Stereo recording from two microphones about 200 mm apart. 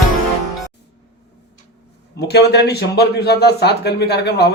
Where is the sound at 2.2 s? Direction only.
55° left (ahead or behind).